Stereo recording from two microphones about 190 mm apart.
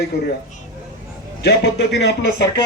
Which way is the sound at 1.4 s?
65° left (ahead or behind).